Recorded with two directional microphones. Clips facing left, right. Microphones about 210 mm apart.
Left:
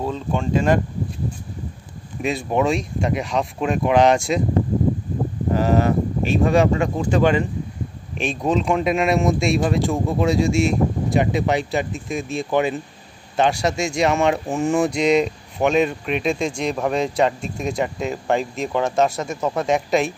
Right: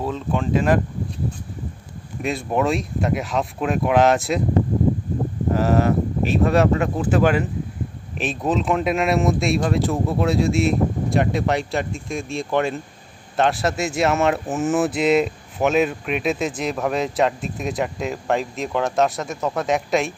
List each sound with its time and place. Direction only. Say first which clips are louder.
0.0 s speech: even; centre (ahead or behind)
2.2 s speech: left 1 dB; centre (ahead or behind)
5.5 s speech: even; centre (ahead or behind)